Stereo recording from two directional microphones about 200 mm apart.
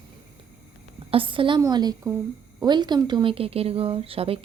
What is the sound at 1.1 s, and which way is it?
A woman's voice, 25° right (ahead or behind).